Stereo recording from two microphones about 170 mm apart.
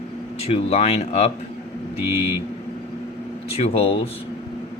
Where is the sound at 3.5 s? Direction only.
35° left (ahead or behind).